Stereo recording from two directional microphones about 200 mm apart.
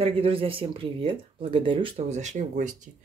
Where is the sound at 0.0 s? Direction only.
25° right (ahead or behind).